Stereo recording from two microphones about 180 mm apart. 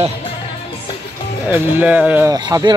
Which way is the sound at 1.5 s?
10° right (ahead or behind).